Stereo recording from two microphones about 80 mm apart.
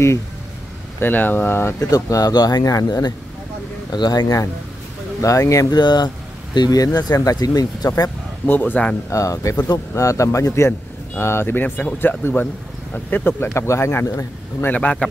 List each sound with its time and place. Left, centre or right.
0.9 s speech: left
1.8 s speech: left
5.8 s speech: left
8.5 s speech: left
9.1 s a man's voice: left
14.6 s a man's voice: centre